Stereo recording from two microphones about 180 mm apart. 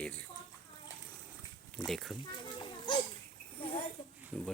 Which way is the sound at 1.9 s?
Centre (ahead or behind).